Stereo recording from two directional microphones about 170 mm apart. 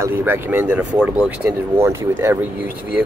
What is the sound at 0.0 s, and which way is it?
Speech, 10° right (ahead or behind).